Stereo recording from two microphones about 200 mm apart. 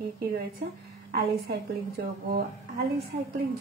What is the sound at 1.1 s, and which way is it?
Speech, 55° right (ahead or behind).